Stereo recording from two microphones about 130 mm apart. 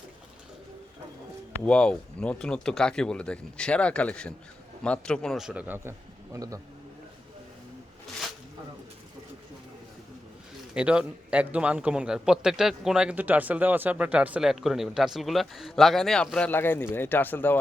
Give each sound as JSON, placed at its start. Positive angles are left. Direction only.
{"t": 1.6, "sound": "speech", "side_deg": 10}
{"t": 5.5, "sound": "speech", "side_deg": -10}
{"t": 6.3, "sound": "a man's voice", "side_deg": -25}
{"t": 10.8, "sound": "a man's voice", "side_deg": -10}
{"t": 16.5, "sound": "speech", "side_deg": 15}